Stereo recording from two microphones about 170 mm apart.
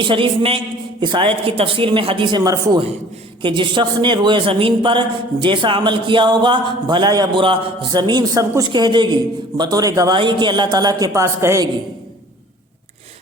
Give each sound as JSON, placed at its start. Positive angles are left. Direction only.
{"t": 0.0, "sound": "speech", "side_deg": -30}